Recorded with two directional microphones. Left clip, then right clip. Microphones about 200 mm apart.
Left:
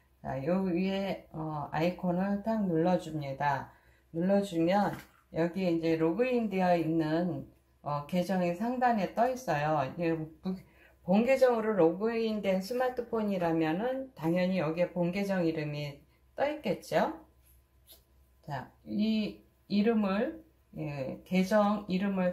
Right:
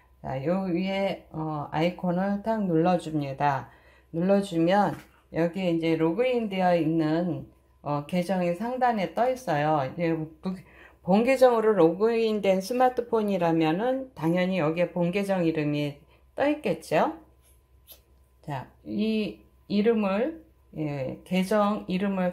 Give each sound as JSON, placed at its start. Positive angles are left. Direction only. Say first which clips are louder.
{"t": 0.2, "sound": "speech", "louder": "right 4 dB", "side_deg": -45}
{"t": 18.4, "sound": "speech", "louder": "right 4 dB", "side_deg": -40}